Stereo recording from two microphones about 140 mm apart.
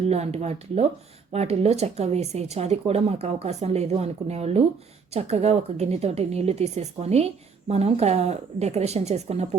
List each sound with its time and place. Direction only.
0.1 s speech: 50° right (ahead or behind)